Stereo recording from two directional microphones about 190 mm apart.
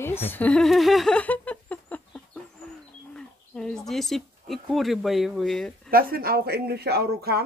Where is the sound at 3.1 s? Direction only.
5° left (ahead or behind).